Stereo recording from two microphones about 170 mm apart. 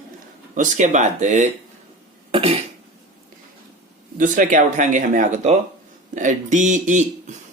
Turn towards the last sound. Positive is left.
turn(degrees=-45)  # may be behind; listen again after turning